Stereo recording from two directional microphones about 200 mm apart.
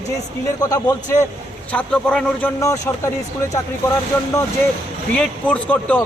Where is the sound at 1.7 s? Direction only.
5° left (ahead or behind).